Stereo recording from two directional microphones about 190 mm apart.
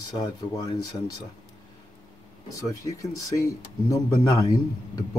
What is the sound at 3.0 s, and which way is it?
Speech, 15° left (ahead or behind).